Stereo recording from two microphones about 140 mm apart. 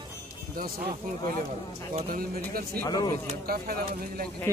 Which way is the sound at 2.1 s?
90° right.